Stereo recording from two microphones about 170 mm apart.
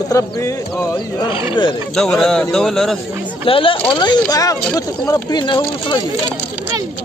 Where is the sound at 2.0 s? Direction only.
5° left (ahead or behind).